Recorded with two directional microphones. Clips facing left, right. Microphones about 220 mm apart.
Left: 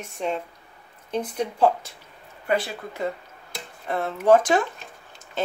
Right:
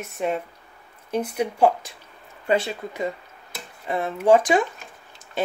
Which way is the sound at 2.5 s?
25° right (ahead or behind).